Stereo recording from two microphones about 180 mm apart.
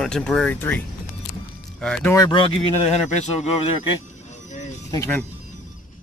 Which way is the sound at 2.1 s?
25° left (ahead or behind).